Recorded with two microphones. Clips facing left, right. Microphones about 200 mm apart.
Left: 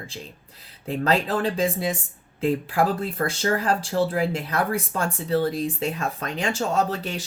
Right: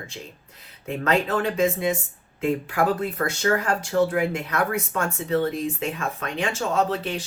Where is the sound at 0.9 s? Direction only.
35° left (ahead or behind).